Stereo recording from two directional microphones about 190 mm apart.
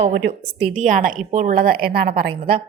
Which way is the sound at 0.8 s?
45° right (ahead or behind).